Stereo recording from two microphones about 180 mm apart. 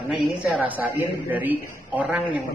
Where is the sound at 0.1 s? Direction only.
5° right (ahead or behind).